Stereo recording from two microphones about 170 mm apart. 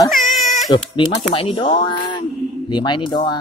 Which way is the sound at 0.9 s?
30° left (ahead or behind).